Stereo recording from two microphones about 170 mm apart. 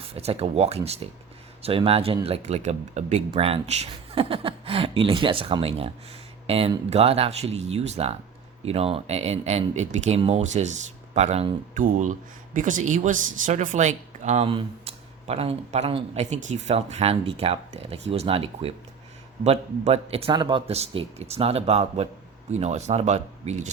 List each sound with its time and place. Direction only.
0.0 s speech: 35° right (ahead or behind)